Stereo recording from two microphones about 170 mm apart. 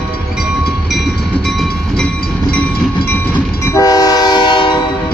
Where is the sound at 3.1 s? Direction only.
10° left (ahead or behind); by 4.7 s 25° left (ahead or behind).